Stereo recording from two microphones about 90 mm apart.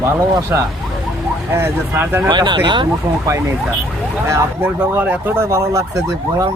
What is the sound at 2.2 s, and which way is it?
Speech, 55° right (ahead or behind).